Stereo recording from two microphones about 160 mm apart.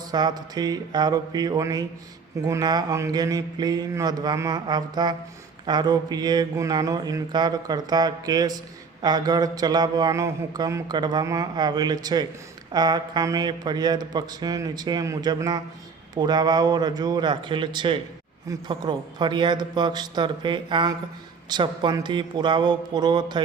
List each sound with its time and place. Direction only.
0.1 s speech: 25° right (ahead or behind)